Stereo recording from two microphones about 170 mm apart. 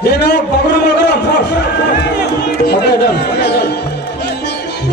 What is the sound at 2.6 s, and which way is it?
Speech, 70° left (ahead or behind).